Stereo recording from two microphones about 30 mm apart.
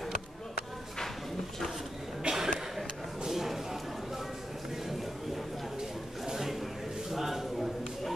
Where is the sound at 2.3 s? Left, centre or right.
Right.